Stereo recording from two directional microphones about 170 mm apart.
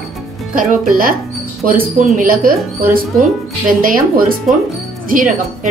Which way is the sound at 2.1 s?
55° right (ahead or behind).